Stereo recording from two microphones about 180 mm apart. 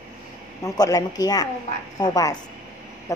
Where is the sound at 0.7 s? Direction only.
20° left (ahead or behind).